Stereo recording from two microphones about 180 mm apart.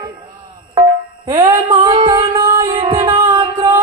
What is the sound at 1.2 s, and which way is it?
Music, 25° right (ahead or behind).